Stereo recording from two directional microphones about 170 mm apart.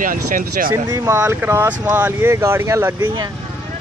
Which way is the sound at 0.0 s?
55° right (ahead or behind).